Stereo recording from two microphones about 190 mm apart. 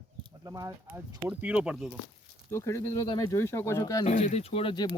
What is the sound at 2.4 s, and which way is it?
Speech, 15° left (ahead or behind).